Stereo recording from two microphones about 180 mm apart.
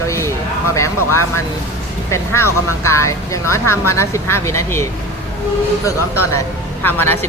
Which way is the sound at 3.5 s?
15° left (ahead or behind).